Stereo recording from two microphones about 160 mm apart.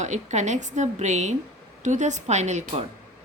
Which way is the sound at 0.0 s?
45° right (ahead or behind).